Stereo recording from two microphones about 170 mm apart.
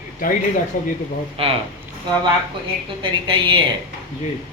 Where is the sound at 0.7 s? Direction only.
50° left (ahead or behind).